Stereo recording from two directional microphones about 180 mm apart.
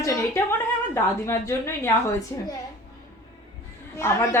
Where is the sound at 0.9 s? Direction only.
15° left (ahead or behind).